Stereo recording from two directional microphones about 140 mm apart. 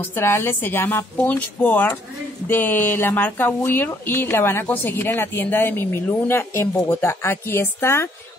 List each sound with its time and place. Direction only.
0.0 s speech: 15° left (ahead or behind)